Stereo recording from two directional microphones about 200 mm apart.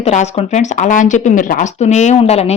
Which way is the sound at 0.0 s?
35° left (ahead or behind).